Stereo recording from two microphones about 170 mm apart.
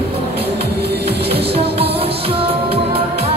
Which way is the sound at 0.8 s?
70° right (ahead or behind).